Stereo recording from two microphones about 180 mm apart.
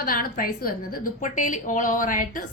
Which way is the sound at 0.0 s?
55° left (ahead or behind).